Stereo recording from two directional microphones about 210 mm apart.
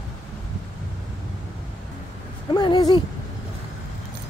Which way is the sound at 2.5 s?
20° left (ahead or behind).